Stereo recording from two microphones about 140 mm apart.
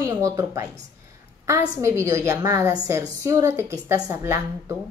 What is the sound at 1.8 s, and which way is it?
Speech, 20° right (ahead or behind).